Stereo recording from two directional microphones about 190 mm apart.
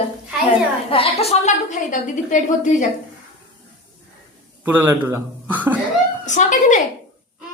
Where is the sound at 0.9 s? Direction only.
30° left (ahead or behind).